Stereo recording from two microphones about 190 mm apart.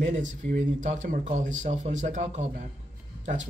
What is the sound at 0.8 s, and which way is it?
Speech, 40° right (ahead or behind).